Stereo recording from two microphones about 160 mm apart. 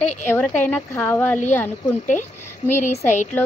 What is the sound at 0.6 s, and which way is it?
Speech, 10° left (ahead or behind).